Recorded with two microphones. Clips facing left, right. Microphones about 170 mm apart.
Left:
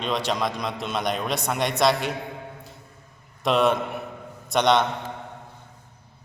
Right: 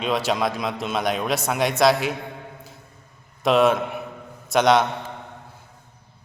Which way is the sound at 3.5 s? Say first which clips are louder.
Right 3 dB; centre (ahead or behind).